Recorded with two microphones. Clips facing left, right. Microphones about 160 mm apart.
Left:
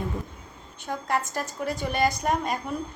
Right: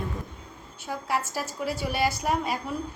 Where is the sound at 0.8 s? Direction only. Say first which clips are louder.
Left 1 dB; 5° right (ahead or behind).